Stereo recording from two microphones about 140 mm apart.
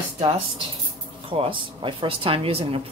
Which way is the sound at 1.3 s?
40° right (ahead or behind).